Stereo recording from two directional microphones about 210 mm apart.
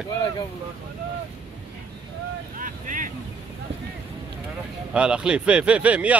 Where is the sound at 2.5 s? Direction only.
40° right (ahead or behind).